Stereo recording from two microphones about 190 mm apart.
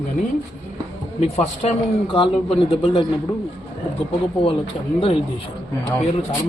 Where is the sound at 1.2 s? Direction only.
35° left (ahead or behind).